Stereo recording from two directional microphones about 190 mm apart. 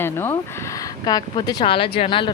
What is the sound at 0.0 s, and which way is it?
Speech, 10° left (ahead or behind).